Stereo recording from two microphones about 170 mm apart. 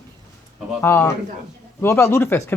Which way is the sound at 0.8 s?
10° left (ahead or behind).